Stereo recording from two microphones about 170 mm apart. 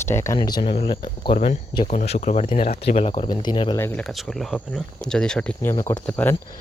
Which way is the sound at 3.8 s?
10° left (ahead or behind).